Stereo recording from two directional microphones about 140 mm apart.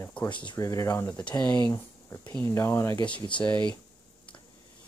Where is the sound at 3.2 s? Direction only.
35° left (ahead or behind).